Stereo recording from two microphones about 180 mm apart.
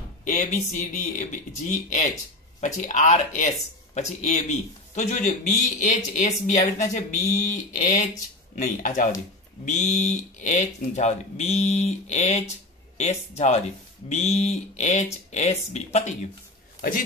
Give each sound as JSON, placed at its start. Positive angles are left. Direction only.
{"t": 0.2, "sound": "speech", "side_deg": 40}